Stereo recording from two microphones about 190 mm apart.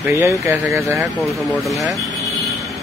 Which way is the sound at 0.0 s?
15° right (ahead or behind).